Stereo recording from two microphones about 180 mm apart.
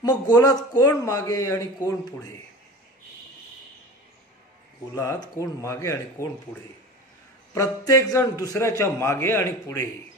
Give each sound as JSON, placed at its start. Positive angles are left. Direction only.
{"t": 0.0, "sound": "a man's voice", "side_deg": 20}
{"t": 4.9, "sound": "a man's voice", "side_deg": 15}
{"t": 7.5, "sound": "a man's voice", "side_deg": 15}